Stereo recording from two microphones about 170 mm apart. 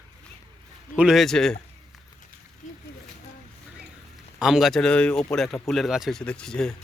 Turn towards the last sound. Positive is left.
turn(degrees=5)  # may be behind; listen again after turning